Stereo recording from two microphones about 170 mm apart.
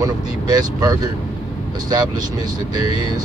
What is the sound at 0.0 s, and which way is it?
Speech, 20° right (ahead or behind).